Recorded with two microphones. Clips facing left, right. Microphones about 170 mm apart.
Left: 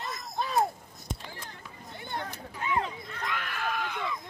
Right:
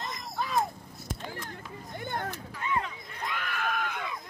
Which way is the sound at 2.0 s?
50° right (ahead or behind).